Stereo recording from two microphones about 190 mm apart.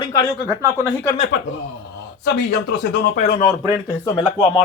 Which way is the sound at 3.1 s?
40° left (ahead or behind).